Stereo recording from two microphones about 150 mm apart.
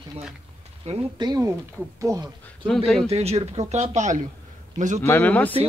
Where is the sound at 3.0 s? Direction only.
45° right (ahead or behind).